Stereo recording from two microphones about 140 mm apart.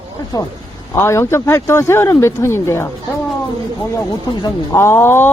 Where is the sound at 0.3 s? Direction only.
25° left (ahead or behind).